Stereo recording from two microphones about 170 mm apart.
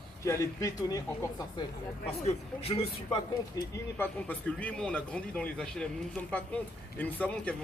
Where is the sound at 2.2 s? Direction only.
35° left (ahead or behind).